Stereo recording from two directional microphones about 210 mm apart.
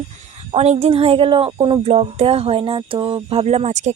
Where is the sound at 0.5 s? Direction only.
30° right (ahead or behind).